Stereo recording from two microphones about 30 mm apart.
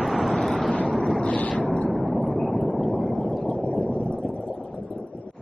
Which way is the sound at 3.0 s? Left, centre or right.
Left.